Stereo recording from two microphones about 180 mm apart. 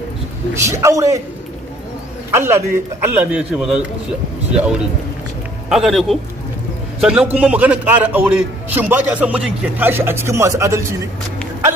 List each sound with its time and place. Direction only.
0.7 s a man's voice: 15° right (ahead or behind)
2.3 s a man's voice: 15° right (ahead or behind)